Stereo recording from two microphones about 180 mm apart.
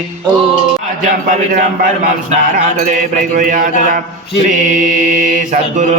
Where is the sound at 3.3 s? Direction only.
50° right (ahead or behind).